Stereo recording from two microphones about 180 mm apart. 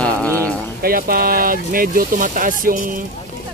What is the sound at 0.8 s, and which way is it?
Speech, 55° right (ahead or behind).